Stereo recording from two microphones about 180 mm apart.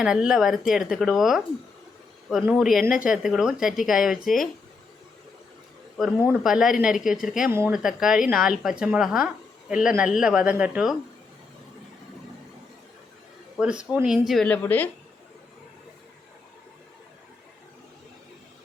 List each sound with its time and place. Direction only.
0.0 s speech: 5° right (ahead or behind)
6.0 s speech: centre (ahead or behind)
13.6 s speech: 5° right (ahead or behind); by 14.8 s 10° left (ahead or behind)